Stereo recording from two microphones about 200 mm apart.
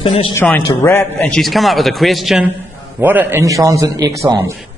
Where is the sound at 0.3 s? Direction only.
15° left (ahead or behind).